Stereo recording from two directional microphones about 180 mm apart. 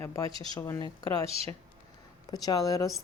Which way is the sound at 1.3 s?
35° right (ahead or behind).